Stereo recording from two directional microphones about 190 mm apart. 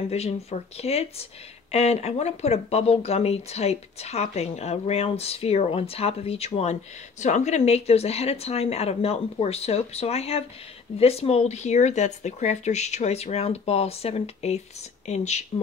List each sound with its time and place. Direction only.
0.1 s speech: 35° left (ahead or behind)